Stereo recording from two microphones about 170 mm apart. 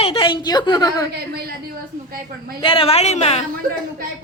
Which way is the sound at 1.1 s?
65° right (ahead or behind).